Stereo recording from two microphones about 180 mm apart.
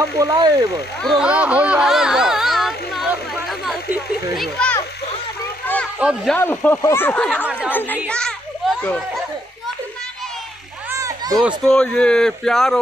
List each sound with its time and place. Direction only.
0.2 s speech: 20° right (ahead or behind)
1.0 s a sound: 5° right (ahead or behind)
4.4 s a child's voice: 5° left (ahead or behind)
5.9 s speech: 5° right (ahead or behind)
6.3 s speech: 10° left (ahead or behind)
8.1 s children playing: 5° left (ahead or behind)
10.9 s children playing: 20° right (ahead or behind)
11.4 s speech: 5° left (ahead or behind)